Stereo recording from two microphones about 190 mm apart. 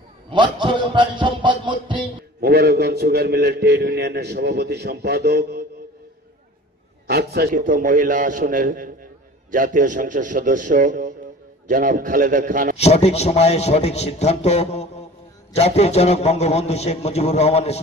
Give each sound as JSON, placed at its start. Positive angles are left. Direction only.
{"t": 0.3, "sound": "a man's voice", "side_deg": -25}
{"t": 2.4, "sound": "a man's voice", "side_deg": -55}
{"t": 7.1, "sound": "a man's voice", "side_deg": -55}
{"t": 12.7, "sound": "a man's voice", "side_deg": 35}